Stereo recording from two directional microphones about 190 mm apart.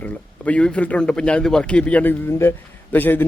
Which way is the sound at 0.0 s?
5° left (ahead or behind).